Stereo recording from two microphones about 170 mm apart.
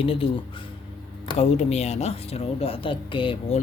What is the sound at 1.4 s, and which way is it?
A woman's voice, 40° left (ahead or behind).